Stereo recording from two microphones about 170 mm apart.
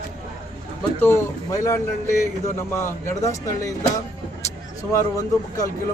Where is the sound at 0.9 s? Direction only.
15° left (ahead or behind).